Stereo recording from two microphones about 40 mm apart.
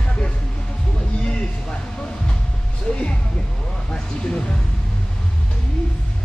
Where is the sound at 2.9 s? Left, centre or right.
Centre.